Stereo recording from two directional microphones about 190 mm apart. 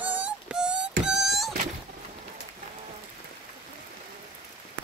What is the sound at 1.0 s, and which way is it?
Wail, 5° right (ahead or behind).